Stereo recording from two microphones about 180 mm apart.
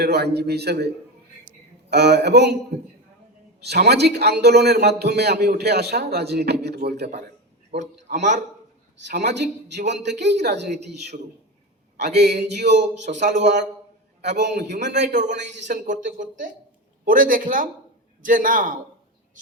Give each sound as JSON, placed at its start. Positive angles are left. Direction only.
{"t": 0.0, "sound": "a man's voice", "side_deg": -65}
{"t": 1.5, "sound": "a sound", "side_deg": -70}
{"t": 3.6, "sound": "a man's voice", "side_deg": -65}
{"t": 7.7, "sound": "a man's voice", "side_deg": -35}
{"t": 9.0, "sound": "speech", "side_deg": -70}
{"t": 14.2, "sound": "speech", "side_deg": -70}
{"t": 15.6, "sound": "speech", "side_deg": -45}